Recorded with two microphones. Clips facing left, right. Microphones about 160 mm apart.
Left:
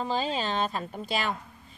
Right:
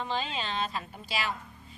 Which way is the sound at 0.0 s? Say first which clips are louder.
Left 5 dB; 40° left (ahead or behind).